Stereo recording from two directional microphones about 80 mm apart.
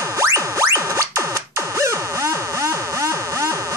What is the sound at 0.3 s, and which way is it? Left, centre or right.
Music, right.